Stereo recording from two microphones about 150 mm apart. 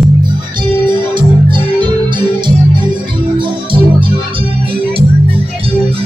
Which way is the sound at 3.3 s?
35° right (ahead or behind).